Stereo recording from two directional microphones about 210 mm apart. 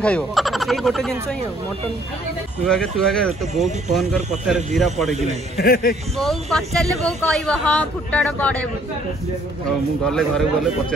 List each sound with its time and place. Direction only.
0.0 s speech: 5° left (ahead or behind)
2.6 s speech: 5° left (ahead or behind)
5.6 s speech: 45° left (ahead or behind)
6.1 s speech: centre (ahead or behind)
9.7 s speech: 5° left (ahead or behind)